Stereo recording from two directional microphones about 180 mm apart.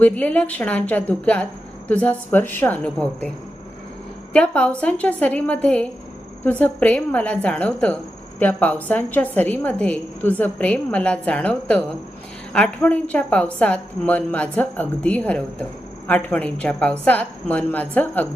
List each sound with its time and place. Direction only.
0.0 s a woman's voice: 10° left (ahead or behind)
4.3 s a woman's voice: 5° left (ahead or behind)